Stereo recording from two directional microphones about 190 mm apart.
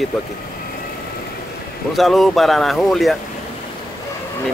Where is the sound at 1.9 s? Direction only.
Centre (ahead or behind).